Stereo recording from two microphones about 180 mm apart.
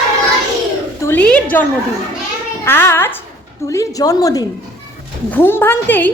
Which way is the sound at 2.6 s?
10° left (ahead or behind).